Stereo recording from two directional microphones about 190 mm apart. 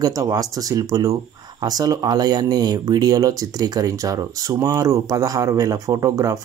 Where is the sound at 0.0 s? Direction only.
20° right (ahead or behind).